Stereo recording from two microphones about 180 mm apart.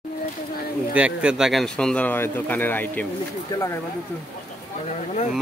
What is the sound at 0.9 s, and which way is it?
Speech, 5° right (ahead or behind).